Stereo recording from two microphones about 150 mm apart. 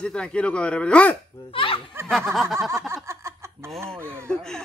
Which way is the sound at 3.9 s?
15° right (ahead or behind).